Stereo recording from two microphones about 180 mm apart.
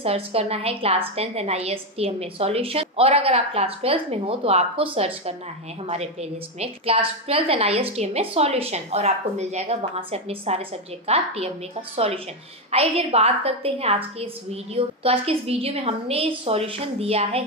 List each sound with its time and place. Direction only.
0.0 s a woman's voice: 35° right (ahead or behind)
6.6 s a woman's voice: 35° right (ahead or behind)
12.7 s a woman's voice: 35° right (ahead or behind)